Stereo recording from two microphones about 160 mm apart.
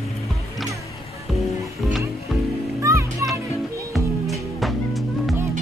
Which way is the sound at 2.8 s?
20° right (ahead or behind).